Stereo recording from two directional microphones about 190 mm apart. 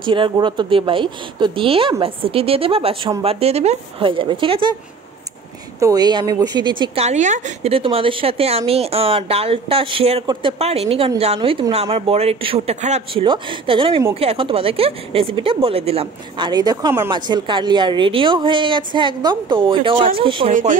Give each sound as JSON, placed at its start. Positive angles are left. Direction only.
{"t": 0.0, "sound": "a woman's voice", "side_deg": -25}
{"t": 5.8, "sound": "a woman's voice", "side_deg": -20}